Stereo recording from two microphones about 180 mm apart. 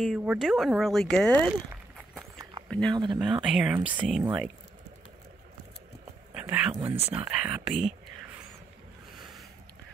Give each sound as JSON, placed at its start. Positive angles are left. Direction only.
{"t": 0.0, "sound": "speech", "side_deg": -5}
{"t": 2.9, "sound": "speech", "side_deg": -25}
{"t": 3.2, "sound": "speech", "side_deg": -5}
{"t": 6.3, "sound": "a sound", "side_deg": -10}
{"t": 7.0, "sound": "speech", "side_deg": -10}